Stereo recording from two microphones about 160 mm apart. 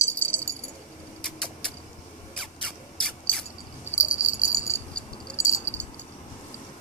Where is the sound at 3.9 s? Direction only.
50° left (ahead or behind).